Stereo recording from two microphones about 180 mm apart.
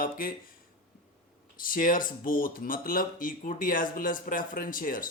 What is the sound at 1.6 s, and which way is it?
Speech, 50° left (ahead or behind).